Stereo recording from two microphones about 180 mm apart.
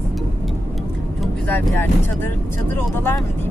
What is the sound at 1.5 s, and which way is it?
Speech, 10° left (ahead or behind).